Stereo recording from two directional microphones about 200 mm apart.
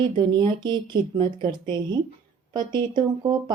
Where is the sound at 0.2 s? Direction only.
25° right (ahead or behind).